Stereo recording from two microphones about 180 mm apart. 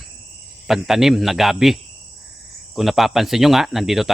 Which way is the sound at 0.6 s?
Centre (ahead or behind).